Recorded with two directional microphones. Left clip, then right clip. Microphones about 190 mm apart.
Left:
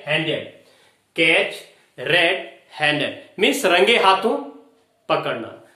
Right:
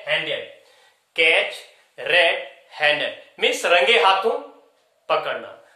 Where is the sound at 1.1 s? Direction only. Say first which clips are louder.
Even; 30° right (ahead or behind).